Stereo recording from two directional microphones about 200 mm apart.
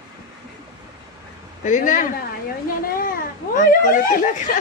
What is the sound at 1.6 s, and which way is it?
Speech, 40° left (ahead or behind).